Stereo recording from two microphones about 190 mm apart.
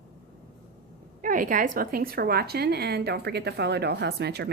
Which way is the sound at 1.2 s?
45° right (ahead or behind).